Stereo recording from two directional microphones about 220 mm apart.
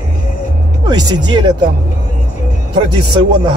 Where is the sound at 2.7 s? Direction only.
20° right (ahead or behind).